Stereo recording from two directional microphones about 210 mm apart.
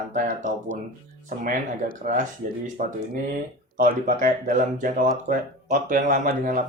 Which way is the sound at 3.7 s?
40° right (ahead or behind).